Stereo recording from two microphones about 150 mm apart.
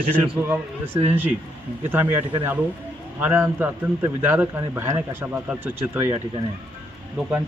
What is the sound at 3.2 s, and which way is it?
Speech, 15° right (ahead or behind).